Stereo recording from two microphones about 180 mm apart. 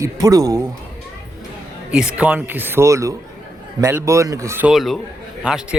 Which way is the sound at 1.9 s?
5° right (ahead or behind).